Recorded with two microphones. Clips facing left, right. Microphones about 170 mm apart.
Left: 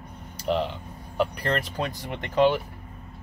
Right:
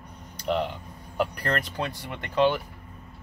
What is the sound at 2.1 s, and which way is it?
Speech, 15° left (ahead or behind).